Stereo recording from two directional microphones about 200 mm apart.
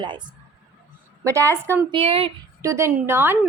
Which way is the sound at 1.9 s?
30° right (ahead or behind).